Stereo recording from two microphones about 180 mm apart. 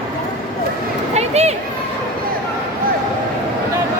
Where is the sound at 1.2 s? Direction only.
35° right (ahead or behind).